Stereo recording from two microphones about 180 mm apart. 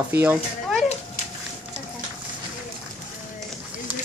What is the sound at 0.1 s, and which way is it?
Speech, 10° right (ahead or behind).